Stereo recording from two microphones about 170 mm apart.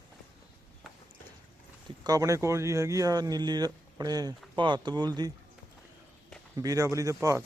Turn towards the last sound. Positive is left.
turn(degrees=-20)  # may be behind; listen again after turning